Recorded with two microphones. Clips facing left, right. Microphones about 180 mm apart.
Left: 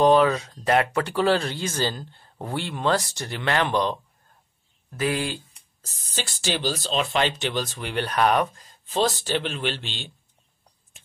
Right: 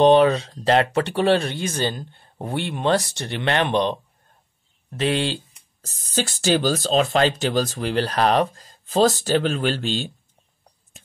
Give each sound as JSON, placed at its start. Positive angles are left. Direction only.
{"t": 0.0, "sound": "speech", "side_deg": -25}
{"t": 5.9, "sound": "speech", "side_deg": -45}